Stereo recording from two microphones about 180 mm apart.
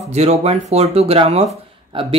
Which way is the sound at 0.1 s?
35° right (ahead or behind).